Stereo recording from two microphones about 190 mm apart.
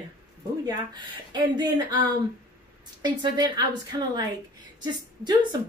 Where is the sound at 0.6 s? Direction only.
20° right (ahead or behind).